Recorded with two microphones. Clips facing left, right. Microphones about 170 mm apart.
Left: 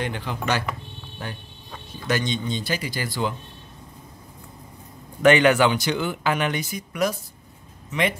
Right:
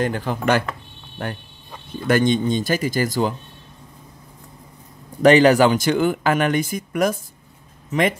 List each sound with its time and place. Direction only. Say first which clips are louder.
0.0 s speech: right 7 dB; 45° right (ahead or behind)
5.2 s speech: right 4 dB; 35° right (ahead or behind)